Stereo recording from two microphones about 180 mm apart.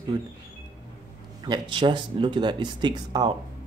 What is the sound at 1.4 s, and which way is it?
Speech, 25° right (ahead or behind).